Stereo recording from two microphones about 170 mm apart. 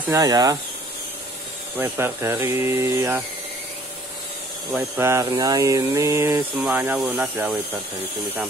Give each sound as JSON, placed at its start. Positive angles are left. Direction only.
{"t": 0.1, "sound": "speech", "side_deg": -20}
{"t": 1.8, "sound": "speech", "side_deg": -15}
{"t": 4.7, "sound": "speech", "side_deg": -15}